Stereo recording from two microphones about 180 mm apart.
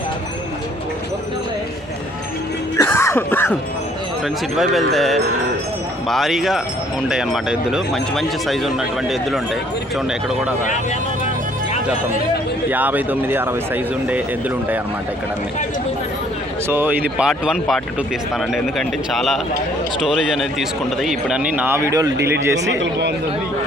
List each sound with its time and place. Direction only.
2.7 s throat clearing: 15° left (ahead or behind)
4.5 s speech: centre (ahead or behind)
12.7 s speech: 10° right (ahead or behind)
16.6 s speech: 10° right (ahead or behind)
22.6 s speech: 70° right (ahead or behind)